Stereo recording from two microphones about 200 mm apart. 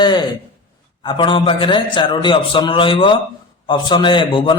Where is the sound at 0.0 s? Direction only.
20° left (ahead or behind).